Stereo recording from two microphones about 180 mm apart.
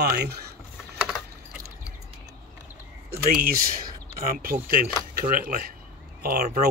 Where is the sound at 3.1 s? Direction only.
55° right (ahead or behind).